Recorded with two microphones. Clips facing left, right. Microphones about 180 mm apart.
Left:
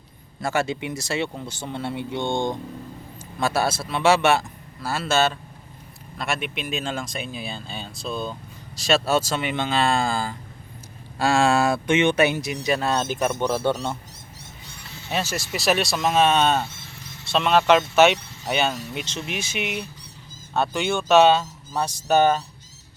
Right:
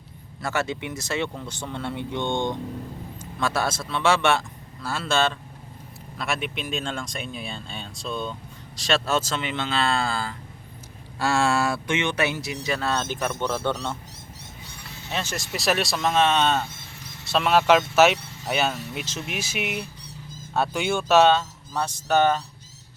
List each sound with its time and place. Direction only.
0.4 s a man's voice: 10° left (ahead or behind)
15.1 s speech: 5° left (ahead or behind)
17.2 s speech: 5° right (ahead or behind); by 22.4 s 10° left (ahead or behind)